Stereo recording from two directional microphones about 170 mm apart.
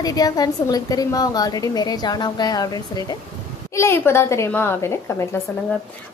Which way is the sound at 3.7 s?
15° left (ahead or behind).